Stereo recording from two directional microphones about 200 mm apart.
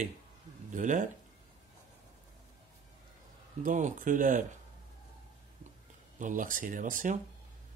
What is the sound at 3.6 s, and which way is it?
Speech, 40° right (ahead or behind).